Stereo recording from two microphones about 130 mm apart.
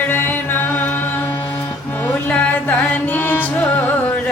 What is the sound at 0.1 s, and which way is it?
Music, 15° left (ahead or behind).